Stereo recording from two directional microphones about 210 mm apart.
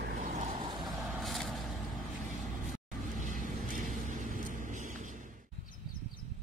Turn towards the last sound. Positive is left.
turn(degrees=-35)  # may be behind; listen again after turning